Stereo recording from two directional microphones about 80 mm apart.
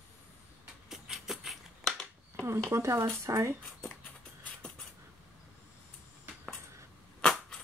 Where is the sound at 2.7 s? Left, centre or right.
Right.